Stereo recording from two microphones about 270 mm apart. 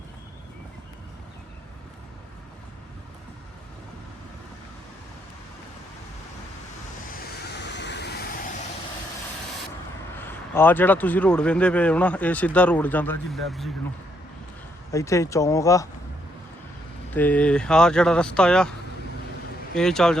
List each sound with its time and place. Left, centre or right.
7.1 s vehicle: left
10.2 s speech: centre
14.9 s speech: centre
17.2 s speech: centre
19.7 s speech: centre